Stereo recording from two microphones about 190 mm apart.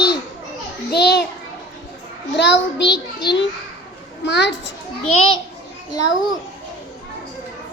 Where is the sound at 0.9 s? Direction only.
60° left (ahead or behind).